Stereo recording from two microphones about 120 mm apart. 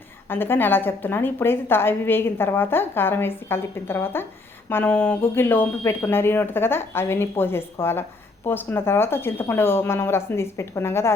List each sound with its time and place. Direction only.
0.3 s a woman's voice: 20° left (ahead or behind)